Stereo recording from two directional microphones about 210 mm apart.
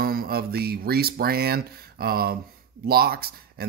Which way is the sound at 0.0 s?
45° right (ahead or behind).